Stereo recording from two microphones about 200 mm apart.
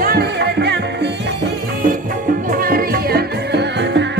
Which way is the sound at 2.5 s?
45° right (ahead or behind).